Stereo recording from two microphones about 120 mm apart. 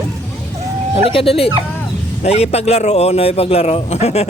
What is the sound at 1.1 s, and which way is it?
Speech, 50° left (ahead or behind).